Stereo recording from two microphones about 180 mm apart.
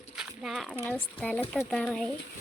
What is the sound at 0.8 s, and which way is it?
Speech, 10° left (ahead or behind).